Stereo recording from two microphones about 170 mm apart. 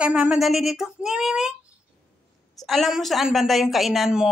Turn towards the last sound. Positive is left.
turn(degrees=-5)  # may be behind; listen again after turning